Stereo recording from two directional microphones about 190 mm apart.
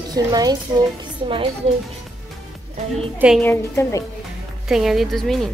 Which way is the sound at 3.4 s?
15° left (ahead or behind).